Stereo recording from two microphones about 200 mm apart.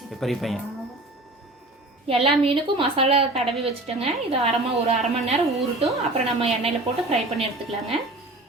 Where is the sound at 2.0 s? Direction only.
30° right (ahead or behind).